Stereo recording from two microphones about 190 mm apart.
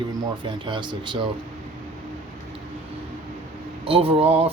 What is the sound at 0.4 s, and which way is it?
Speech, 25° right (ahead or behind).